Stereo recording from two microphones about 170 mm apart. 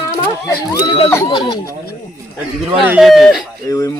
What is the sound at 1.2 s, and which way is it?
Speech, 30° left (ahead or behind).